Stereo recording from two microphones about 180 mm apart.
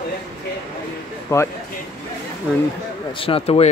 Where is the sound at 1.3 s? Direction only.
15° left (ahead or behind).